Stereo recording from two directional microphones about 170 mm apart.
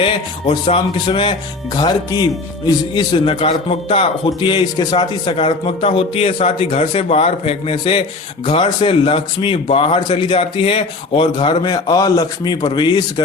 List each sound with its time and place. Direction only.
0.0 s a man's voice: 35° left (ahead or behind)